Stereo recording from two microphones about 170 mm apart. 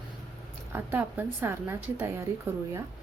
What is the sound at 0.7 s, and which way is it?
A woman's voice, 10° right (ahead or behind).